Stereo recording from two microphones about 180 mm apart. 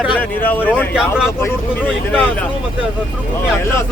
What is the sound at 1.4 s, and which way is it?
Speech, 10° left (ahead or behind).